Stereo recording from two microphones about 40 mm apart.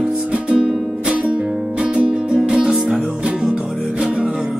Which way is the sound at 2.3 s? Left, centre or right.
Right.